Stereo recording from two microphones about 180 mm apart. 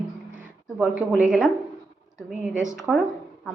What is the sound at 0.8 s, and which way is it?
Speech, 5° right (ahead or behind).